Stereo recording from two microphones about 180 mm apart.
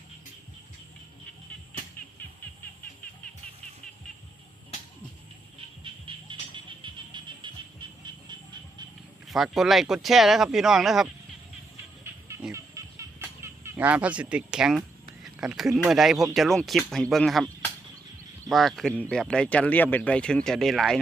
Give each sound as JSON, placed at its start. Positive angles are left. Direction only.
{"t": 5.8, "sound": "music", "side_deg": -30}
{"t": 9.2, "sound": "speech", "side_deg": 0}
{"t": 12.5, "sound": "speech", "side_deg": -15}